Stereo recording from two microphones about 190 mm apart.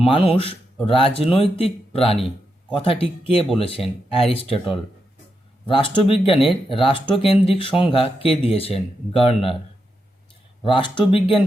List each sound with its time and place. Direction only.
0.0 s speech: 30° left (ahead or behind)
10.6 s speech: 25° left (ahead or behind)